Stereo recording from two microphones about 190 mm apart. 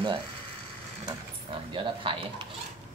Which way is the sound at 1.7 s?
25° right (ahead or behind).